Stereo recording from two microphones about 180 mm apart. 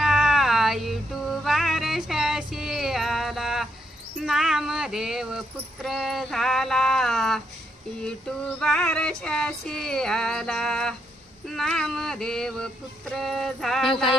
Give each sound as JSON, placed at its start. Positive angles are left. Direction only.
{"t": 0.0, "sound": "a sound", "side_deg": 0}
{"t": 4.2, "sound": "speech", "side_deg": 0}
{"t": 8.5, "sound": "speech", "side_deg": 5}
{"t": 13.9, "sound": "speech", "side_deg": 30}